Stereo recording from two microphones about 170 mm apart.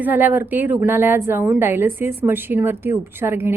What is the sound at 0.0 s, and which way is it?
A woman's voice, 10° right (ahead or behind).